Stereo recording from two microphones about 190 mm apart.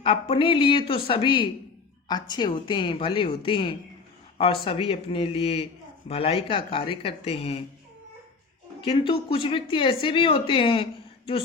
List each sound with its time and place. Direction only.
0.0 s speech: 25° left (ahead or behind)
8.8 s speech: 25° left (ahead or behind)